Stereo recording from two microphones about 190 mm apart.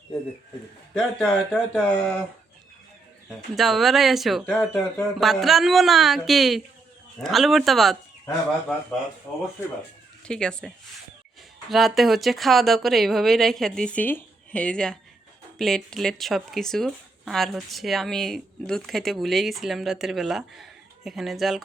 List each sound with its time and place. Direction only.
0.9 s speech: centre (ahead or behind)
3.5 s speech: centre (ahead or behind)
9.3 s speech: 10° left (ahead or behind)
11.7 s speech: centre (ahead or behind)